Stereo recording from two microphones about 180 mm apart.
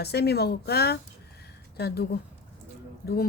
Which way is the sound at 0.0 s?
65° left (ahead or behind).